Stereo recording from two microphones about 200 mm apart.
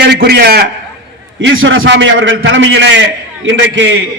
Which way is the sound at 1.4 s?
80° right.